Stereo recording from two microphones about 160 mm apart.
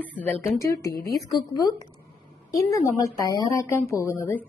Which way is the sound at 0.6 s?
20° left (ahead or behind).